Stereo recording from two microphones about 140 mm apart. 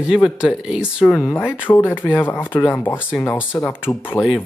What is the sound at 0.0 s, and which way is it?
Speech, 5° right (ahead or behind).